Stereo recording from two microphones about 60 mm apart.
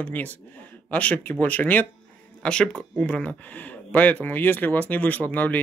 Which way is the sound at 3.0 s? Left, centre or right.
Left.